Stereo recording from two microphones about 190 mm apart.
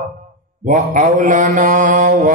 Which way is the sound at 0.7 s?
40° right (ahead or behind).